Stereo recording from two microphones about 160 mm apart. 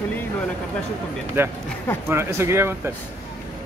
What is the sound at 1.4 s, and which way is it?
Speech, 15° right (ahead or behind).